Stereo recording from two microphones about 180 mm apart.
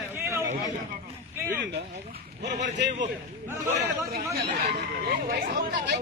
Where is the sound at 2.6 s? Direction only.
75° right (ahead or behind).